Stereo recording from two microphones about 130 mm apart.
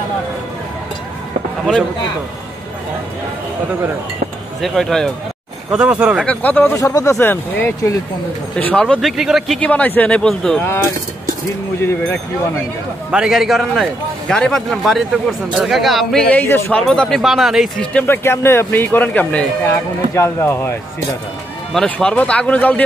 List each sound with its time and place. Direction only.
4.6 s a man's voice: 5° left (ahead or behind)
5.7 s speech: 5° right (ahead or behind)
6.2 s a man's voice: 15° left (ahead or behind)
8.8 s a man's voice: centre (ahead or behind)
9.6 s a man's voice: 10° left (ahead or behind)
13.1 s a man's voice: 5° right (ahead or behind); by 16.8 s 20° left (ahead or behind)
16.8 s a man's voice: 5° left (ahead or behind)
17.9 s a man's voice: 15° left (ahead or behind)
21.7 s a man's voice: 10° left (ahead or behind)